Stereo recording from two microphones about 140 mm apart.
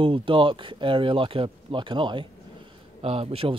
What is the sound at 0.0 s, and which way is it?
Speech, 40° right (ahead or behind).